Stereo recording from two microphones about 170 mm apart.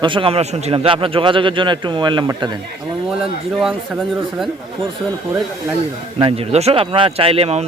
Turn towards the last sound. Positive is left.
turn(degrees=-35)  # may be behind; listen again after turning